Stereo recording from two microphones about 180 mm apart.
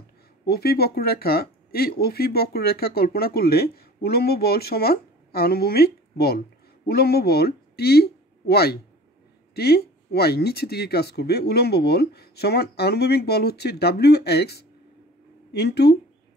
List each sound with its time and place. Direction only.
0.5 s speech: 60° left (ahead or behind)